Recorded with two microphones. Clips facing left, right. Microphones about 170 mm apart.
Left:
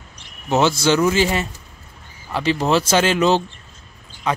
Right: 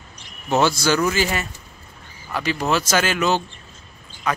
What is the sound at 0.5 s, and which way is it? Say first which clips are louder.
Speech: left 2 dB; 20° left (ahead or behind).